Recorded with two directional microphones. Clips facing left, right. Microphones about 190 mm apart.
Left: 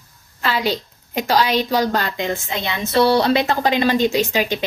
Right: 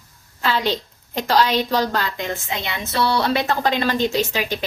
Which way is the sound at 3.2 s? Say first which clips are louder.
Left 3 dB; 20° left (ahead or behind).